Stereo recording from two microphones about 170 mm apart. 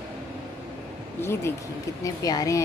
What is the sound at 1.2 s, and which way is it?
A woman's voice, 15° left (ahead or behind).